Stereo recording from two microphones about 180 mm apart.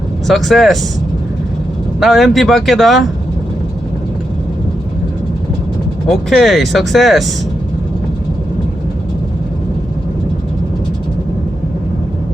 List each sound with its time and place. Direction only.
0.3 s speech: centre (ahead or behind)
2.0 s speech: centre (ahead or behind)
6.1 s speech: centre (ahead or behind)